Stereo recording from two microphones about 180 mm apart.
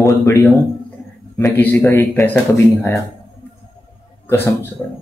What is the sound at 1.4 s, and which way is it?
Speech, 10° left (ahead or behind).